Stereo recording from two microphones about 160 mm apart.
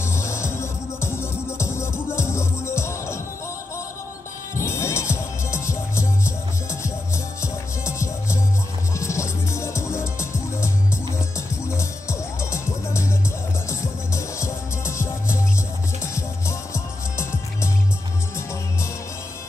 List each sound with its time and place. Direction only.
0.0 s music: 15° left (ahead or behind)
4.6 s music: 15° left (ahead or behind)